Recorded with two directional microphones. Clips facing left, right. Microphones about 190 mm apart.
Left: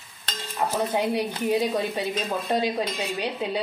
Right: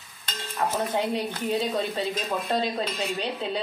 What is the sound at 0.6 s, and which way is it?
Speech, 15° left (ahead or behind).